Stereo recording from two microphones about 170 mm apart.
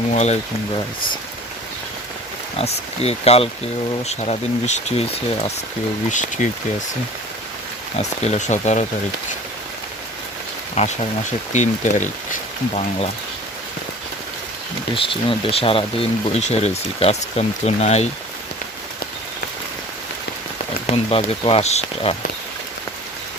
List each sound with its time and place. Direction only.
0.1 s speech: 40° left (ahead or behind)
2.6 s speech: 35° left (ahead or behind)
7.9 s speech: 40° left (ahead or behind)
10.8 s speech: 40° left (ahead or behind)
14.9 s speech: 30° left (ahead or behind)
20.8 s speech: 35° left (ahead or behind)